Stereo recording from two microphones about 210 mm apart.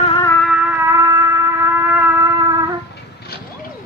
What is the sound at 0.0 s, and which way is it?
Music, 25° left (ahead or behind).